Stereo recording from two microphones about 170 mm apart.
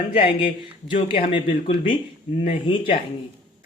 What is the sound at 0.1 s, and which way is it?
Speech, 30° left (ahead or behind).